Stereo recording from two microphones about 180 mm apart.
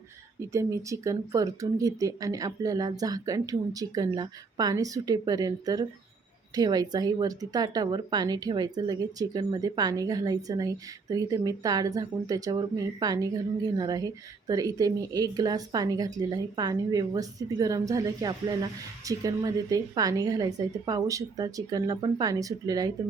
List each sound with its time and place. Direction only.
0.3 s speech: 15° right (ahead or behind)